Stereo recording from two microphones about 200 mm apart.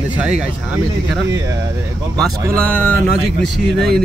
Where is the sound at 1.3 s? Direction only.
15° right (ahead or behind).